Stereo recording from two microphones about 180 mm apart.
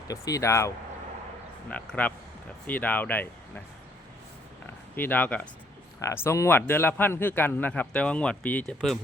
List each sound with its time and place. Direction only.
0.1 s a man's voice: 20° left (ahead or behind)
1.7 s a man's voice: 10° left (ahead or behind)
4.9 s a man's voice: 10° left (ahead or behind)